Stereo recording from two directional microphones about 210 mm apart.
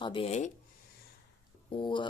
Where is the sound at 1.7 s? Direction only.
25° left (ahead or behind).